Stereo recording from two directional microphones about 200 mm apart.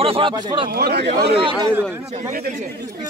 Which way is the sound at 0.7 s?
50° right (ahead or behind).